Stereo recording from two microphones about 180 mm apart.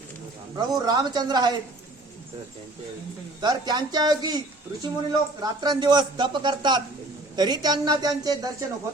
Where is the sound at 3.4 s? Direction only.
20° right (ahead or behind).